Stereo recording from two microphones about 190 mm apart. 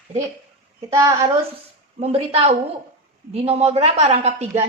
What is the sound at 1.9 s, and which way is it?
A woman's voice, 30° right (ahead or behind).